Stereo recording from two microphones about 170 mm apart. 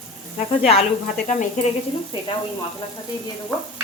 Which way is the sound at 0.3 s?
35° left (ahead or behind).